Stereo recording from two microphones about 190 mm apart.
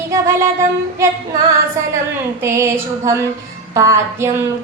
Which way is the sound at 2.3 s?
15° right (ahead or behind).